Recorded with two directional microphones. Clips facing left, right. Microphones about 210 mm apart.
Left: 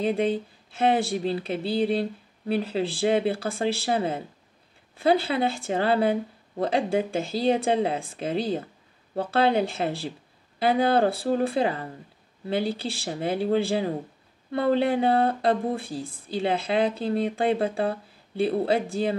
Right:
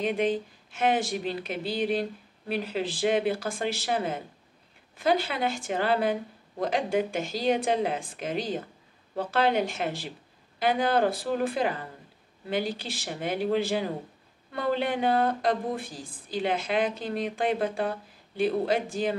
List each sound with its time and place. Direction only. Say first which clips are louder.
0.0 s speech: left 2 dB; 30° left (ahead or behind)